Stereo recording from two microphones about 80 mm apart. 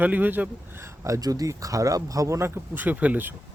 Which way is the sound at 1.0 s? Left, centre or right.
Right.